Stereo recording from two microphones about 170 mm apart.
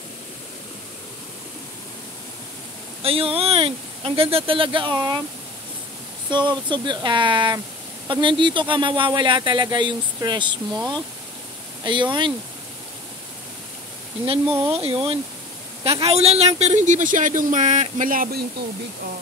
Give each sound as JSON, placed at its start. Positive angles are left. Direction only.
{"t": 3.0, "sound": "speech", "side_deg": -35}
{"t": 6.3, "sound": "speech", "side_deg": -25}
{"t": 14.2, "sound": "speech", "side_deg": -35}